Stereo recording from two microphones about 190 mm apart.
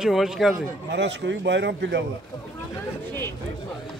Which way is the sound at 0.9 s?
65° right (ahead or behind).